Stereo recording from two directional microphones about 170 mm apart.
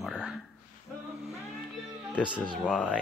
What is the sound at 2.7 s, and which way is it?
Speech, 5° left (ahead or behind).